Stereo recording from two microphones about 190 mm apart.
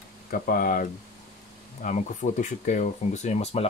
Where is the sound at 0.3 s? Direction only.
50° left (ahead or behind).